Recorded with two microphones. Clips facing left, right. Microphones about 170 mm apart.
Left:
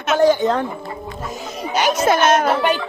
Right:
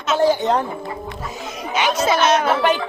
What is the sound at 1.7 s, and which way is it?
Speech, 45° left (ahead or behind).